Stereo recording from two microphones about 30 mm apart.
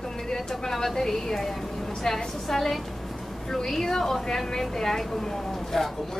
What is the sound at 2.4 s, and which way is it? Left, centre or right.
Speech, centre.